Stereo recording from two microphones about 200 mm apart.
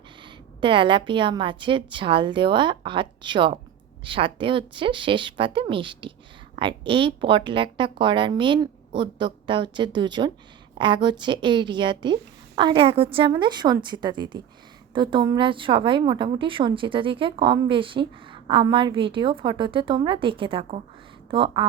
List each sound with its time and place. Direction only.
0.2 s a woman's voice: 25° right (ahead or behind)